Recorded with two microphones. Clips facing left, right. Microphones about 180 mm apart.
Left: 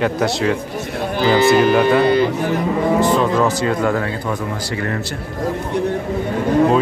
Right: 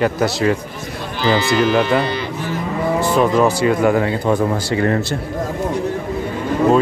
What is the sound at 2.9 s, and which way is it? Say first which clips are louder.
Speech: right 3 dB; 10° right (ahead or behind).